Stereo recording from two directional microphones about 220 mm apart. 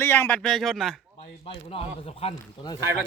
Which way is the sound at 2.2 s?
20° left (ahead or behind).